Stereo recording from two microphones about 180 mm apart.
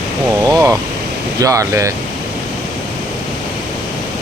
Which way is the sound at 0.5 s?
15° right (ahead or behind).